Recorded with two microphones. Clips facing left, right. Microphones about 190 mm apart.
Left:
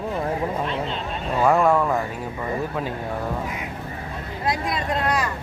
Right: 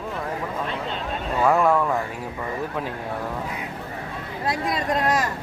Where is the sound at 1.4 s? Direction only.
5° left (ahead or behind).